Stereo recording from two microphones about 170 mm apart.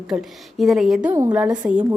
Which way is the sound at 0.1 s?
Centre (ahead or behind).